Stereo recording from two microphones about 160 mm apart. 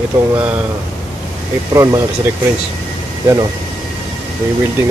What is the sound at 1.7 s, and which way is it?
Speech, 20° right (ahead or behind).